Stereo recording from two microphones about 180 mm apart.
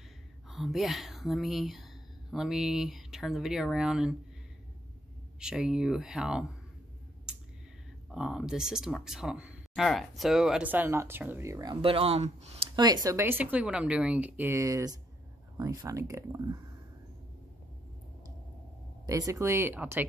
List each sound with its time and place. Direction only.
0.5 s speech: centre (ahead or behind)
5.4 s speech: 5° right (ahead or behind)
7.3 s a sound: 5° right (ahead or behind)
8.1 s speech: 5° right (ahead or behind); by 12.6 s 35° right (ahead or behind)
12.7 s speech: 20° right (ahead or behind)
19.0 s speech: 20° right (ahead or behind)